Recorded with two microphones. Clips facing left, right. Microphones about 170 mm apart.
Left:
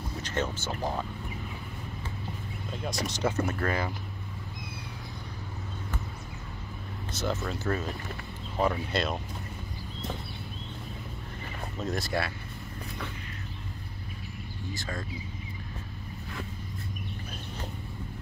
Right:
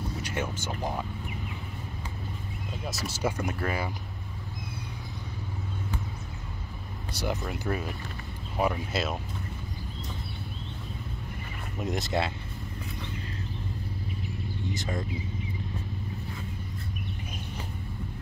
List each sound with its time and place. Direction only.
0.2 s speech: 10° right (ahead or behind)
2.9 s speech: 10° right (ahead or behind)
7.2 s speech: 15° right (ahead or behind)
11.8 s speech: 20° right (ahead or behind)
14.7 s speech: 20° right (ahead or behind)